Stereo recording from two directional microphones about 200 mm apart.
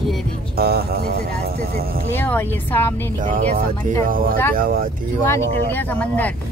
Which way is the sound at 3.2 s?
40° right (ahead or behind).